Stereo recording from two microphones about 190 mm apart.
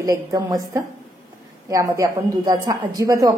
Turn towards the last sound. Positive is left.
turn(degrees=-20)  # may be behind; listen again after turning